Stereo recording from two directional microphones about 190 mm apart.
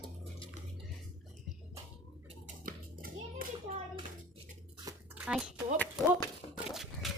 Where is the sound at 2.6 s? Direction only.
50° right (ahead or behind).